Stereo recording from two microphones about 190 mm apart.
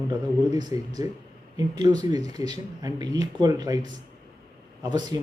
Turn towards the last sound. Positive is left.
turn(degrees=-20)  # may be behind; listen again after turning